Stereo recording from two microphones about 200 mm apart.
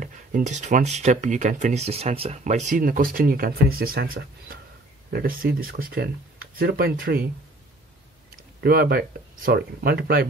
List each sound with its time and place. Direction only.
0.0 s speech: 40° right (ahead or behind)
8.5 s speech: 50° right (ahead or behind)